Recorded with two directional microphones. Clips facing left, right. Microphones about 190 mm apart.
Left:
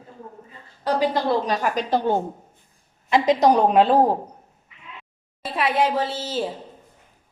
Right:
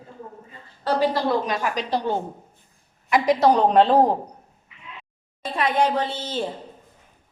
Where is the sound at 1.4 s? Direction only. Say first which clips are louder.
Left 2 dB; 40° left (ahead or behind).